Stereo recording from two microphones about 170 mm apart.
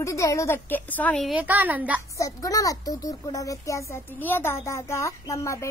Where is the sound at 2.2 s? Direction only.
20° left (ahead or behind).